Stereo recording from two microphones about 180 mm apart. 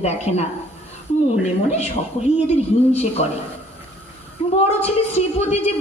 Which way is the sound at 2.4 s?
35° left (ahead or behind).